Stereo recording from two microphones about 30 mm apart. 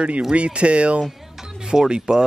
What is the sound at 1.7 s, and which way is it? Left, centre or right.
Speech, right.